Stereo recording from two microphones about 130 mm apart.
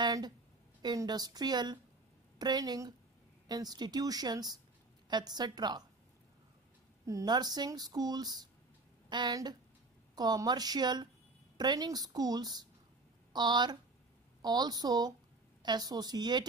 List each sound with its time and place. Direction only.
0.0 s a sound: 35° right (ahead or behind)
0.8 s speech: 30° right (ahead or behind)
7.1 s a woman's voice: 30° right (ahead or behind)